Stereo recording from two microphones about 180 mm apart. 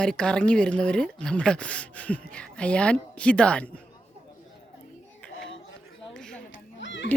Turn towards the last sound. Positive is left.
turn(degrees=90)